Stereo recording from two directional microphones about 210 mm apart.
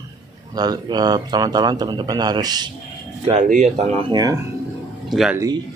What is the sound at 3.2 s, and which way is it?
Speech, 35° right (ahead or behind).